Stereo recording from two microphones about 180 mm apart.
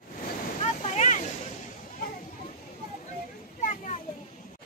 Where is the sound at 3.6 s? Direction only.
45° left (ahead or behind).